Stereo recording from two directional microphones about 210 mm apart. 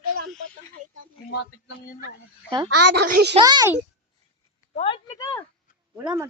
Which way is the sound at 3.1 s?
50° right (ahead or behind).